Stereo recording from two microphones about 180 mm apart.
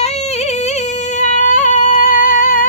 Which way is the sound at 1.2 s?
45° left (ahead or behind).